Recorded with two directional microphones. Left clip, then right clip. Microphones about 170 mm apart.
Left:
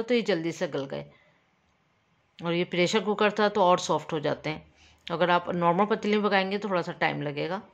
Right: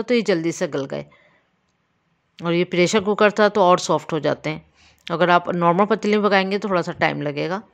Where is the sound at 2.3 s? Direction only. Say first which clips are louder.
Right 7 dB; 40° right (ahead or behind).